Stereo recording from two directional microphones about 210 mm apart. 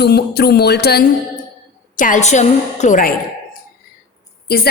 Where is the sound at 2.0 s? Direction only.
35° left (ahead or behind).